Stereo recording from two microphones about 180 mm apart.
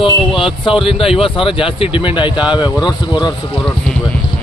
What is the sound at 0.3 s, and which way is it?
Speech, 30° left (ahead or behind).